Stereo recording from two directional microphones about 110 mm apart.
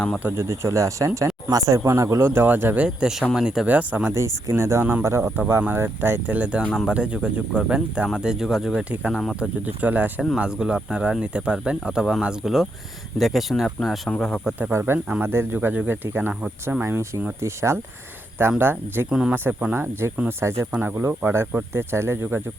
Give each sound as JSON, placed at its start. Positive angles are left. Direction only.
{"t": 0.2, "sound": "speech", "side_deg": -20}
{"t": 4.1, "sound": "speech", "side_deg": -25}
{"t": 9.6, "sound": "speech", "side_deg": -15}
{"t": 14.7, "sound": "speech", "side_deg": -20}